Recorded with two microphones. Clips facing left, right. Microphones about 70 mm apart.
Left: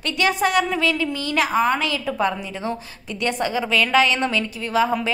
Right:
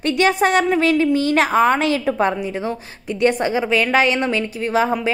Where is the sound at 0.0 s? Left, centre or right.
Right.